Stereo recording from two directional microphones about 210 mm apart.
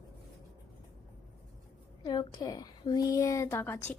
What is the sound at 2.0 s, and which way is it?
A woman's voice, 20° left (ahead or behind).